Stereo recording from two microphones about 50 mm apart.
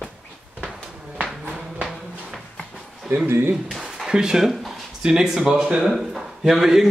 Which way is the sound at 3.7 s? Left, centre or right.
Centre.